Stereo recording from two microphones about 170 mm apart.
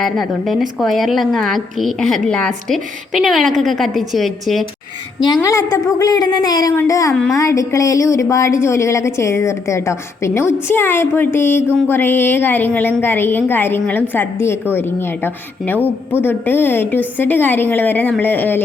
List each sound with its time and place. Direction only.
0.0 s a woman's voice: centre (ahead or behind)
5.2 s a woman's voice: 20° left (ahead or behind)
7.1 s a woman's voice: centre (ahead or behind)
7.3 s a woman's voice: 20° left (ahead or behind)